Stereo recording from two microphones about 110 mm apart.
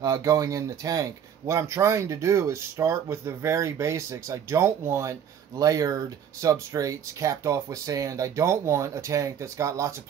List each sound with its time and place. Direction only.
0.0 s speech: 30° right (ahead or behind)